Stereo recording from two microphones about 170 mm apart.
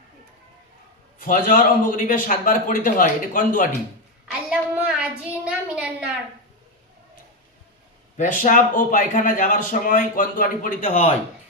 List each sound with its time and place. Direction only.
1.2 s a man's voice: 50° left (ahead or behind)
4.3 s a woman's voice: 5° right (ahead or behind)
8.1 s a man's voice: 50° left (ahead or behind)